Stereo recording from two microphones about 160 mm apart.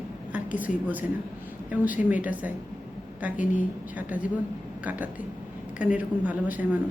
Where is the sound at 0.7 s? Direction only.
50° left (ahead or behind).